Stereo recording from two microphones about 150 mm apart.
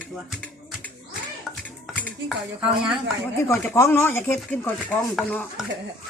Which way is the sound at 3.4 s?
10° left (ahead or behind).